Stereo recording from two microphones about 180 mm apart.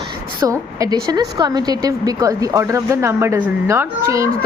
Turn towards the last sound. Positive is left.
turn(degrees=-15)  # may be behind; listen again after turning